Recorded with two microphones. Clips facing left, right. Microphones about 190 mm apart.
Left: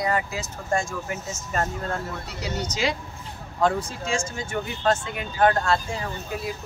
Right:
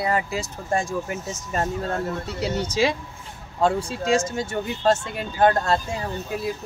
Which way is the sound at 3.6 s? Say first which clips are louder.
Right 2 dB; 30° right (ahead or behind).